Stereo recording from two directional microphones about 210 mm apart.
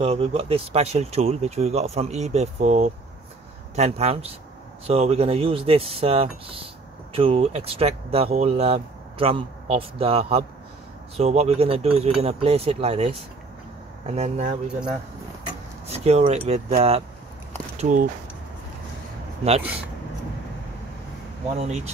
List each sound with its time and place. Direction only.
0.0 s speech: 25° right (ahead or behind)
15.9 s speech: 30° right (ahead or behind)
21.5 s speech: 30° right (ahead or behind)